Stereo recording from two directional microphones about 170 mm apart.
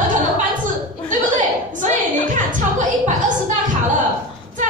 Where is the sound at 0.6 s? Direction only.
50° right (ahead or behind).